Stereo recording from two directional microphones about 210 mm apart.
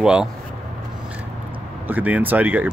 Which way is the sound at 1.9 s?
10° right (ahead or behind).